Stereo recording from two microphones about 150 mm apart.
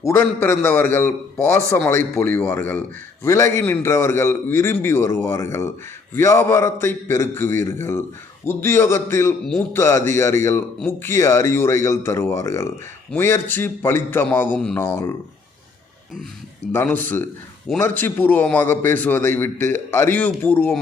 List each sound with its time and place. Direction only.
0.0 s a man's voice: 15° left (ahead or behind)
16.7 s a man's voice: 10° left (ahead or behind)